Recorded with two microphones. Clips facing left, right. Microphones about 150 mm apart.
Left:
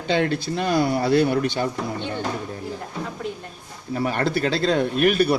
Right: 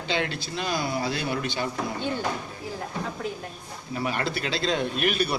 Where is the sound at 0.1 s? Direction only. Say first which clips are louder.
Left 7 dB; 50° left (ahead or behind).